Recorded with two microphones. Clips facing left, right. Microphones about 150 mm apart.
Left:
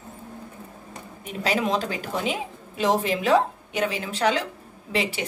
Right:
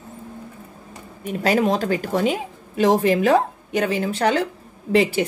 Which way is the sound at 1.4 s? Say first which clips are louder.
Right 5 dB; 45° right (ahead or behind).